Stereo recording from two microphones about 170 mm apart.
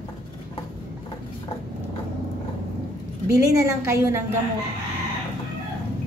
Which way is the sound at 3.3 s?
20° right (ahead or behind).